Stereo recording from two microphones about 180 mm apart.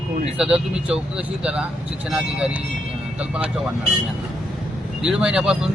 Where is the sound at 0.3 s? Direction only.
5° right (ahead or behind).